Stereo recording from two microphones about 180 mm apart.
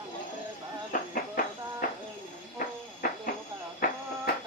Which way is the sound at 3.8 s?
50° left (ahead or behind).